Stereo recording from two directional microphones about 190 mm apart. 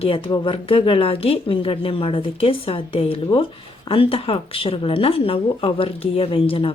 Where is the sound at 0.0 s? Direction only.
30° left (ahead or behind).